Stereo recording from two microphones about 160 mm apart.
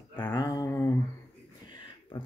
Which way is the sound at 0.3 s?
25° left (ahead or behind).